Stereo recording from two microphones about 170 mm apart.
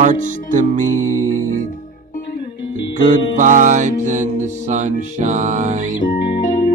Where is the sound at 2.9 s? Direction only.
50° right (ahead or behind).